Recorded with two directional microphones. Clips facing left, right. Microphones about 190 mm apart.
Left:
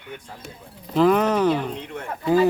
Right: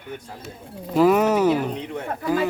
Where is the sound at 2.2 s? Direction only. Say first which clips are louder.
Left 4 dB; 25° left (ahead or behind).